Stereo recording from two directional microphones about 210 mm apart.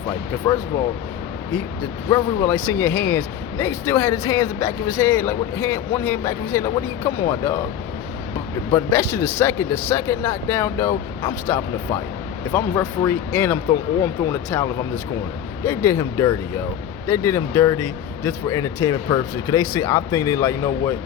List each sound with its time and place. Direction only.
0.4 s speech: 15° left (ahead or behind)
2.0 s speech: 15° left (ahead or behind)
8.7 s speech: 15° left (ahead or behind)